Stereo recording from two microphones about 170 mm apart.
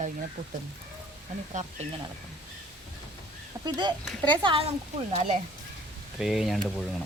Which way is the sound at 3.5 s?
25° right (ahead or behind).